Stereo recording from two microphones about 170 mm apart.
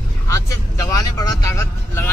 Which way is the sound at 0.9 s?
20° left (ahead or behind).